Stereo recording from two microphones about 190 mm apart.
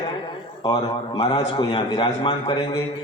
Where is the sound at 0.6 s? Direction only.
25° left (ahead or behind).